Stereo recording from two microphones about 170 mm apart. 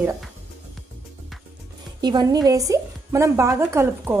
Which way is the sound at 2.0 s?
25° right (ahead or behind).